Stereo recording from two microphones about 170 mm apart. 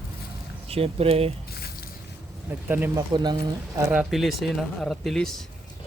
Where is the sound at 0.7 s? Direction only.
35° right (ahead or behind).